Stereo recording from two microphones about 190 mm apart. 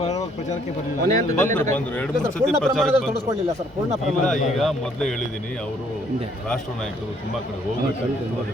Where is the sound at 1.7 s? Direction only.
5° left (ahead or behind).